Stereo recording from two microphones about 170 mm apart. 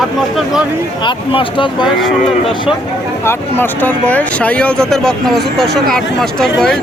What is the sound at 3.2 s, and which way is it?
Speech, 10° left (ahead or behind).